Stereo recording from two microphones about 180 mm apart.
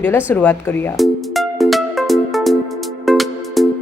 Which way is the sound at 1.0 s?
Centre (ahead or behind).